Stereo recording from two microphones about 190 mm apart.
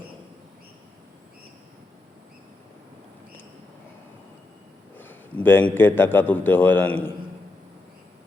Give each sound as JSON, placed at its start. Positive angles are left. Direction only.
{"t": 4.9, "sound": "a man's voice", "side_deg": 10}